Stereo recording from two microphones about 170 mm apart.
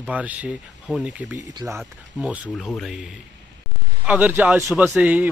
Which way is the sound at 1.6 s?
15° right (ahead or behind).